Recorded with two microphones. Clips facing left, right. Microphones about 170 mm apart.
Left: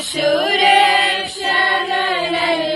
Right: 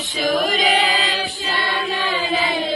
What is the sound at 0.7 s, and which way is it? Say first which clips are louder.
Choir: left 6 dB; 65° left (ahead or behind).